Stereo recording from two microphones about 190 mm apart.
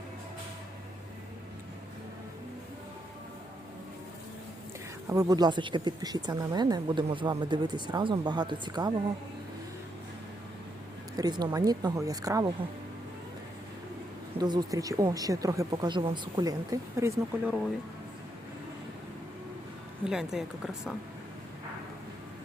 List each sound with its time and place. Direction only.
5.0 s speech: 20° right (ahead or behind)
11.2 s speech: 20° right (ahead or behind)
14.3 s speech: 20° right (ahead or behind)
17.4 s speech: centre (ahead or behind)
20.1 s speech: 5° right (ahead or behind)